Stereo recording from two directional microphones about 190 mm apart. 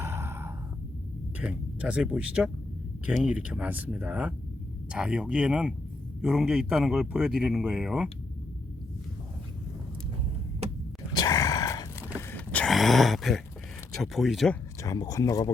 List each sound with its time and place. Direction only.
0.0 s sigh: 15° right (ahead or behind)
1.4 s speech: 5° right (ahead or behind)
11.1 s a sound: 20° left (ahead or behind)
12.3 s a sound: 5° left (ahead or behind)
13.9 s speech: centre (ahead or behind)
14.8 s speech: 20° left (ahead or behind)